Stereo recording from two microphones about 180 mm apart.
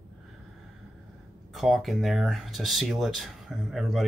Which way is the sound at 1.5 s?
Centre (ahead or behind).